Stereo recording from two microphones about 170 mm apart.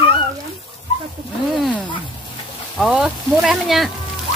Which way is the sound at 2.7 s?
Centre (ahead or behind).